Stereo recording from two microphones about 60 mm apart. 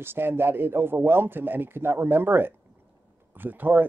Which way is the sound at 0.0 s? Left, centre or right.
Right.